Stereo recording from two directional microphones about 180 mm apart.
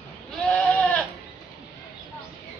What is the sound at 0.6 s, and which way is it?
Goat, centre (ahead or behind).